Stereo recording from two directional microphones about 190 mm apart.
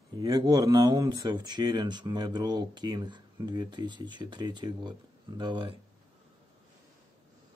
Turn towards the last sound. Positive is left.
turn(degrees=-25)  # may be behind; listen again after turning